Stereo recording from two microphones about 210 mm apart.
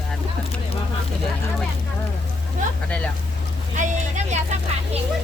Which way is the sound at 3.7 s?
35° right (ahead or behind).